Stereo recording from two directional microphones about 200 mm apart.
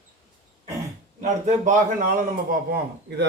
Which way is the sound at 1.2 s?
35° right (ahead or behind).